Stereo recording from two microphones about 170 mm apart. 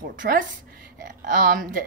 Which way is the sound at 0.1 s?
50° right (ahead or behind).